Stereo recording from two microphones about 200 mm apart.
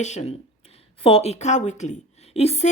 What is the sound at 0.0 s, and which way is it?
A woman's voice, 35° left (ahead or behind).